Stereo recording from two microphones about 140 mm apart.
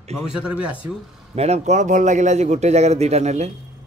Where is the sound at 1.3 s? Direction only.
50° right (ahead or behind).